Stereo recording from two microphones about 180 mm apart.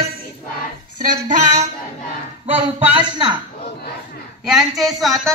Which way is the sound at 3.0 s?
25° right (ahead or behind).